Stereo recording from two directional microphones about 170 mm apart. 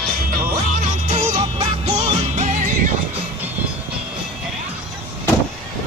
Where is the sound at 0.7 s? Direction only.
50° right (ahead or behind).